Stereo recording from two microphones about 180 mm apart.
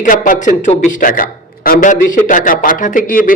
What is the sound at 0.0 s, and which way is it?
A man's voice, 45° left (ahead or behind).